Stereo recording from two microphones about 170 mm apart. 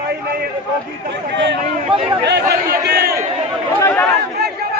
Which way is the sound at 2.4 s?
20° right (ahead or behind).